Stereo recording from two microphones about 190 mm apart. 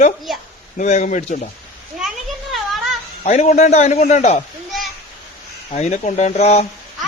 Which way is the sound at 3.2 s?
35° left (ahead or behind).